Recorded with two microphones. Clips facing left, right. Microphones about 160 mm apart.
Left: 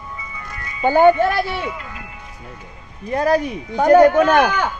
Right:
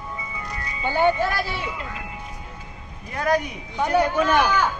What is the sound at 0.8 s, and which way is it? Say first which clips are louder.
Speech: left 8 dB; 45° left (ahead or behind).